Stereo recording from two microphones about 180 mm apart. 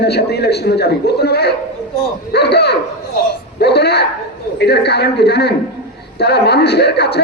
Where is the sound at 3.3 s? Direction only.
65° left (ahead or behind).